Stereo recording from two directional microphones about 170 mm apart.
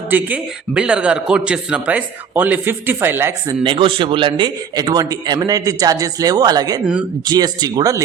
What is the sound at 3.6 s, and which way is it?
A woman's voice, 30° right (ahead or behind).